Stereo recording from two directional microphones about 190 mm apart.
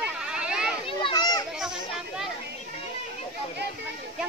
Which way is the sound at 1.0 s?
20° left (ahead or behind).